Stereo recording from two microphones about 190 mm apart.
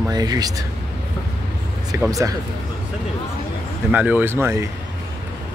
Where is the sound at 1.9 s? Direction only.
15° right (ahead or behind).